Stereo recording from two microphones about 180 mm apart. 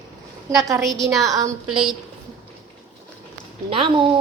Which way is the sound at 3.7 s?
30° right (ahead or behind).